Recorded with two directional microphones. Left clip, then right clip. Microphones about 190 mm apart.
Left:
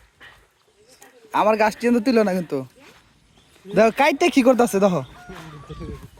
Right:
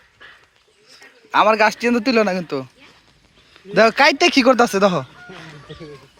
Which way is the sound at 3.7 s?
10° left (ahead or behind).